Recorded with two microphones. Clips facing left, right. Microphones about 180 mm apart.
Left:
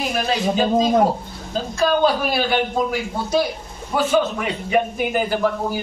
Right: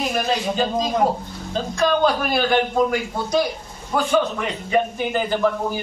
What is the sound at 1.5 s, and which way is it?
A man's voice, 5° left (ahead or behind).